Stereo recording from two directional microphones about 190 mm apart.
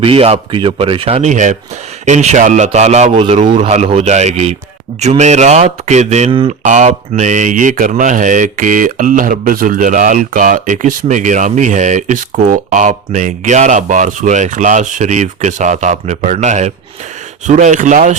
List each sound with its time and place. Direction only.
0.0 s speech: 30° right (ahead or behind)